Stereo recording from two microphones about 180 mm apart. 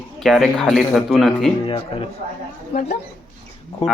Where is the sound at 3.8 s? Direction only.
35° left (ahead or behind).